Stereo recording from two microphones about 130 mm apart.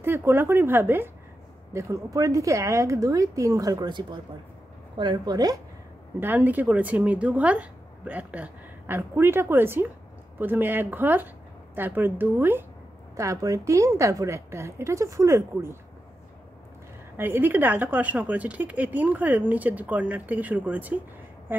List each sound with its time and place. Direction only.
0.0 s a woman's voice: 20° right (ahead or behind)
6.1 s a woman's voice: 15° right (ahead or behind)
17.2 s a woman's voice: 15° right (ahead or behind)
21.5 s a sound: 15° right (ahead or behind)